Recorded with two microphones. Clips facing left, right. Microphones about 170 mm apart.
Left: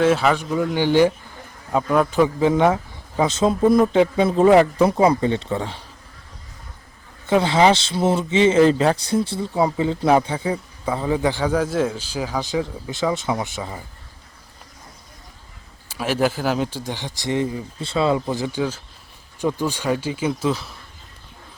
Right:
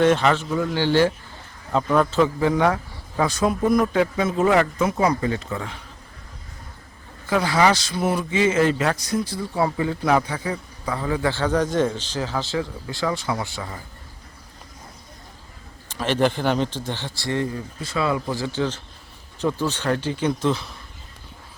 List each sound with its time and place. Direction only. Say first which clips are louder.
0.0 s speech: even; 5° left (ahead or behind); by 5.8 s 30° left (ahead or behind)
7.3 s speech: left 3 dB; 25° left (ahead or behind)
15.9 s speech: even; 10° left (ahead or behind)